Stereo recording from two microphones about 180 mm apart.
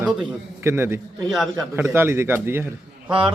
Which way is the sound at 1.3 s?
Centre (ahead or behind).